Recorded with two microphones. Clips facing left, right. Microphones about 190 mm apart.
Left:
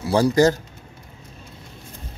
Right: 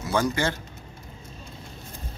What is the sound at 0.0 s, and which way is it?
Speech, 35° left (ahead or behind).